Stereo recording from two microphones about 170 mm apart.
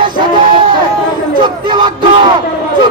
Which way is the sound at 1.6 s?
25° right (ahead or behind).